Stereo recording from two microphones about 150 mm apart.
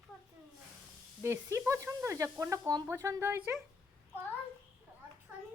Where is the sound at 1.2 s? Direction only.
20° right (ahead or behind).